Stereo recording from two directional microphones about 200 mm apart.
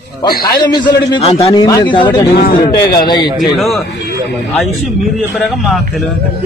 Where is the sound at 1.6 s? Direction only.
20° left (ahead or behind).